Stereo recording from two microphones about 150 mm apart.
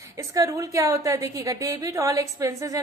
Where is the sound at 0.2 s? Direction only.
20° right (ahead or behind).